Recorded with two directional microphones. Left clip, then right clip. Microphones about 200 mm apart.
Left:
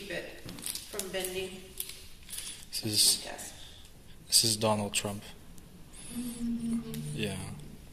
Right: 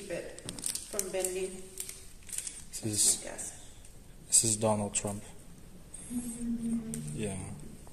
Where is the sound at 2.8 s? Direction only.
15° right (ahead or behind).